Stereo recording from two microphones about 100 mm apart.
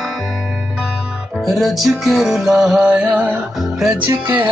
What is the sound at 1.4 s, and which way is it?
Music, centre (ahead or behind).